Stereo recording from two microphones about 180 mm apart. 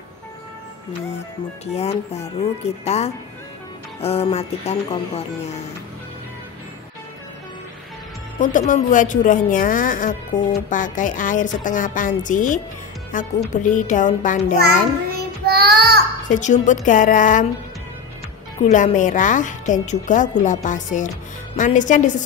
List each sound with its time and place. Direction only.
1.7 s speech: 35° left (ahead or behind)
8.4 s speech: 45° left (ahead or behind)
15.1 s child singing: 60° right (ahead or behind)
16.3 s speech: 45° left (ahead or behind)
18.6 s speech: 45° left (ahead or behind)